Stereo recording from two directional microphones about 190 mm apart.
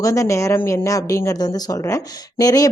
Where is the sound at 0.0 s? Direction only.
15° left (ahead or behind).